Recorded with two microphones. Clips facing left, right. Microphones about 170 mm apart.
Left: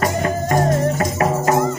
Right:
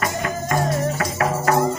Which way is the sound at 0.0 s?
40° left (ahead or behind).